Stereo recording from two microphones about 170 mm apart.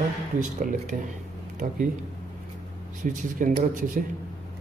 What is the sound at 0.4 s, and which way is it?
Speech, 50° right (ahead or behind).